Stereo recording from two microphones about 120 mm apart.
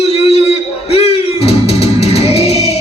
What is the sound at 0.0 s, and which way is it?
Music, 55° left (ahead or behind).